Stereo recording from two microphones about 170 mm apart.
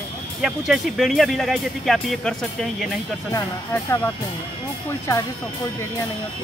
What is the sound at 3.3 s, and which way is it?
Speech, 15° left (ahead or behind).